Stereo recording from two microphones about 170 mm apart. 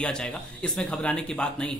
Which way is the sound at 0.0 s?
5° left (ahead or behind).